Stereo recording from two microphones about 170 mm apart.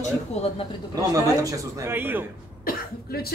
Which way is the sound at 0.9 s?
20° right (ahead or behind).